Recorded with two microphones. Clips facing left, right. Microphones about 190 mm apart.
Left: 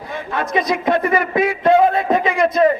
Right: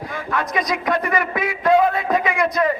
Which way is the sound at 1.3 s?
25° left (ahead or behind).